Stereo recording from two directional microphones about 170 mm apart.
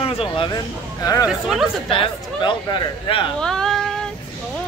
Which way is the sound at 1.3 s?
Centre (ahead or behind).